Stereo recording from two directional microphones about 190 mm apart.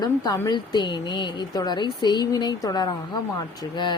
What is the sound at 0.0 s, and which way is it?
Speech, 20° left (ahead or behind).